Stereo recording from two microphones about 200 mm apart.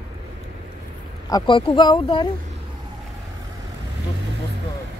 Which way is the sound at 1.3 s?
25° left (ahead or behind).